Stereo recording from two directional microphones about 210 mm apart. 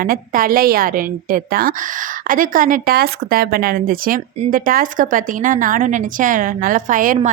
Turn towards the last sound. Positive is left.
turn(degrees=-40)  # may be behind; listen again after turning